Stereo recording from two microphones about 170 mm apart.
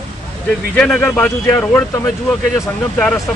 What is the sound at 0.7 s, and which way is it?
Speech, 5° left (ahead or behind).